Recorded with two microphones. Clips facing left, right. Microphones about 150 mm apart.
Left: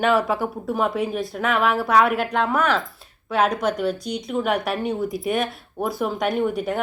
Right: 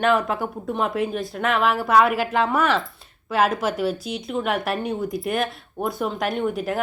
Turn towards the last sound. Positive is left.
turn(degrees=0)  # may be behind; listen again after turning